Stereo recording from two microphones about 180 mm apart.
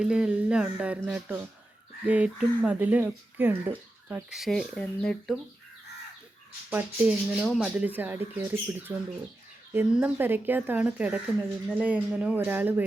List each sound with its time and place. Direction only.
0.0 s speech: 5° right (ahead or behind)
6.7 s speech: 10° right (ahead or behind)